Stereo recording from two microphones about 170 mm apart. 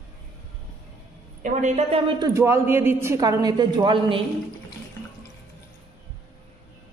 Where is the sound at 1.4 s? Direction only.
40° right (ahead or behind).